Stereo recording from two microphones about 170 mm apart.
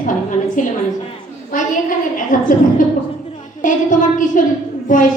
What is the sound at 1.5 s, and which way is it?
A woman's voice, 50° left (ahead or behind).